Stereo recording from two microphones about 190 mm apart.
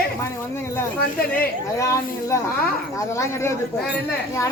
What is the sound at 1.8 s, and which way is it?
A woman's voice, 15° left (ahead or behind).